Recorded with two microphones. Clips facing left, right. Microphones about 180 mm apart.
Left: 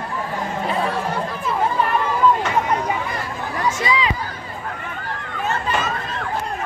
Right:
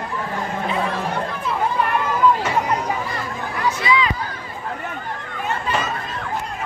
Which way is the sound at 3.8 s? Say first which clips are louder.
Right 3 dB; 35° left (ahead or behind).